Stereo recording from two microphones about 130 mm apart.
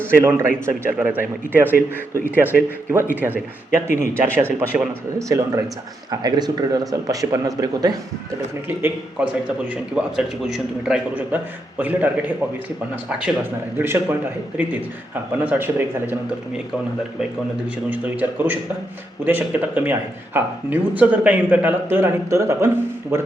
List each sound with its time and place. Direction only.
0.0 s speech: 20° right (ahead or behind)
5.3 s speech: 25° right (ahead or behind)
8.6 s speech: 15° right (ahead or behind)
17.8 s speech: 10° right (ahead or behind)